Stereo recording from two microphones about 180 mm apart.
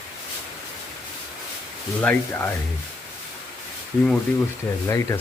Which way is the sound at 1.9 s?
10° left (ahead or behind).